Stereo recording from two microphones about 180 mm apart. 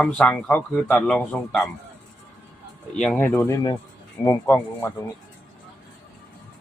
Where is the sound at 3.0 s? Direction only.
10° left (ahead or behind).